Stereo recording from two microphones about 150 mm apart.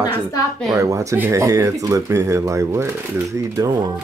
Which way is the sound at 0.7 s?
20° right (ahead or behind).